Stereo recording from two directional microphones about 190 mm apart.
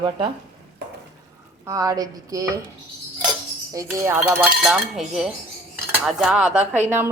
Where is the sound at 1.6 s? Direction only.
15° right (ahead or behind).